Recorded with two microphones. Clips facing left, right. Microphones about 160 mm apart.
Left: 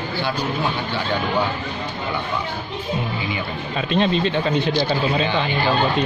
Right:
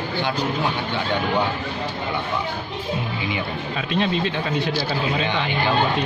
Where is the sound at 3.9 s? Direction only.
30° left (ahead or behind).